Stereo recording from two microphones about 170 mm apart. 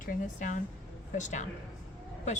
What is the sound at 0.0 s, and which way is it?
Speech, 50° left (ahead or behind).